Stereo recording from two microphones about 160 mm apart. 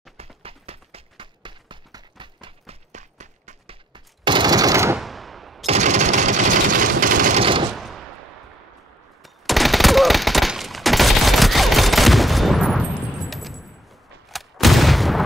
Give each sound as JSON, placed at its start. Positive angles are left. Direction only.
{"t": 0.2, "sound": "clip-clop", "side_deg": -40}
{"t": 3.9, "sound": "a sound", "side_deg": -30}
{"t": 4.9, "sound": "a sound", "side_deg": 0}
{"t": 5.7, "sound": "a sound", "side_deg": -45}
{"t": 7.3, "sound": "machine gun", "side_deg": -35}
{"t": 7.7, "sound": "gunshot", "side_deg": 0}
{"t": 9.2, "sound": "fusillade", "side_deg": 0}
{"t": 13.3, "sound": "keys jangling", "side_deg": 0}
{"t": 14.3, "sound": "artillery fire", "side_deg": 0}